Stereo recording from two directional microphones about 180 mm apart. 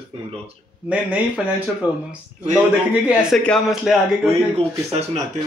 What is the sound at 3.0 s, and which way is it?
A man's voice, 5° right (ahead or behind).